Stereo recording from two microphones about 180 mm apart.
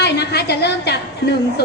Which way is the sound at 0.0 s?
65° left (ahead or behind).